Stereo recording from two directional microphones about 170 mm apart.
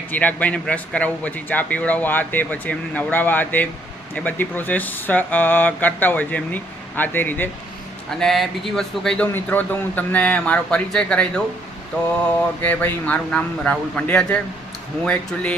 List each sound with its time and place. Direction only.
0.1 s speech: 10° left (ahead or behind)
8.2 s speech: centre (ahead or behind)
12.6 s speech: 10° left (ahead or behind)